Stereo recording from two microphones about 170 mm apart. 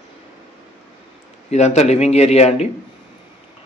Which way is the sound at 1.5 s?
40° left (ahead or behind).